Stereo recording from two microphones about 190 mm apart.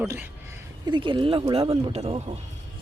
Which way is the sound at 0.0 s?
10° right (ahead or behind).